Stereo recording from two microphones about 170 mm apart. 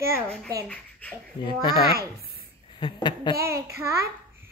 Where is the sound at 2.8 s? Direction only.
25° left (ahead or behind).